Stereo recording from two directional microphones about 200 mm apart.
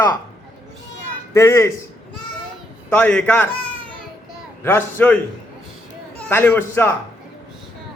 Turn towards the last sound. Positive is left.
turn(degrees=10)  # may be behind; listen again after turning